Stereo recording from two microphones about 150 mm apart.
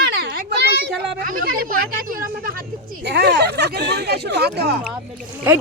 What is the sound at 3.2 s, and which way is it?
Speech, 90° right.